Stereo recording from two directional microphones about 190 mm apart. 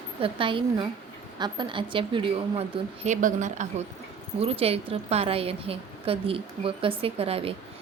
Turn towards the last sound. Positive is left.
turn(degrees=-30)  # may be behind; listen again after turning